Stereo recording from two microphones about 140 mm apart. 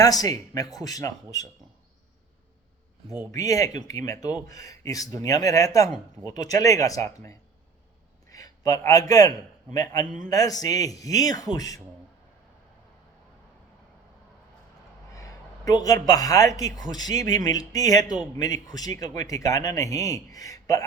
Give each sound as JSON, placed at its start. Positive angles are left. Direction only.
{"t": 0.0, "sound": "a man's voice", "side_deg": 25}
{"t": 3.3, "sound": "a man's voice", "side_deg": 25}
{"t": 15.1, "sound": "a man's voice", "side_deg": 25}